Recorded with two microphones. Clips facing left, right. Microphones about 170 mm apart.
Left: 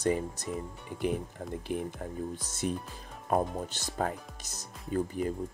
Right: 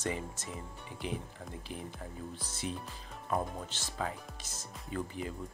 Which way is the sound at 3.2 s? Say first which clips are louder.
Left 6 dB; 45° left (ahead or behind).